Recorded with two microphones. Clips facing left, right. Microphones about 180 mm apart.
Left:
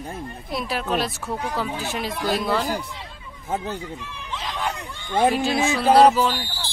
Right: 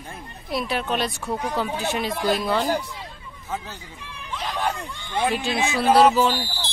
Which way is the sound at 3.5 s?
55° left (ahead or behind).